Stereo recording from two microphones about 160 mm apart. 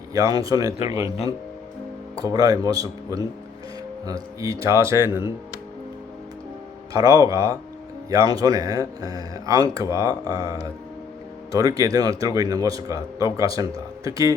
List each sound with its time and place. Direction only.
0.1 s speech: 25° right (ahead or behind)
2.2 s speech: 25° right (ahead or behind)
6.9 s speech: 25° right (ahead or behind)